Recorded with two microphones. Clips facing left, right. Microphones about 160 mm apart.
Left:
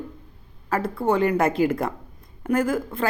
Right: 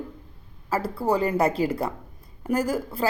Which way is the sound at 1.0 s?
35° right (ahead or behind).